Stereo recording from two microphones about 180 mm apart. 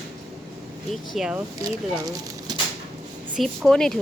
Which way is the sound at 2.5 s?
25° right (ahead or behind).